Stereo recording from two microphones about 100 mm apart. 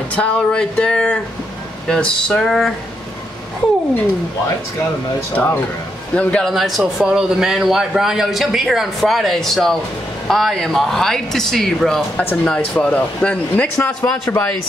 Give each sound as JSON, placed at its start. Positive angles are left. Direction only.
{"t": 0.1, "sound": "speech", "side_deg": 10}
{"t": 5.3, "sound": "a man's voice", "side_deg": 20}
{"t": 12.2, "sound": "speech", "side_deg": 15}